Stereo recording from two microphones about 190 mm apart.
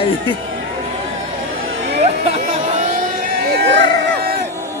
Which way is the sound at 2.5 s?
40° right (ahead or behind).